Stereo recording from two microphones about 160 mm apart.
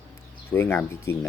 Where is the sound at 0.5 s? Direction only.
15° left (ahead or behind).